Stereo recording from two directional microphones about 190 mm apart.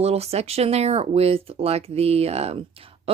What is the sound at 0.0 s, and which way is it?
Speech, 35° right (ahead or behind).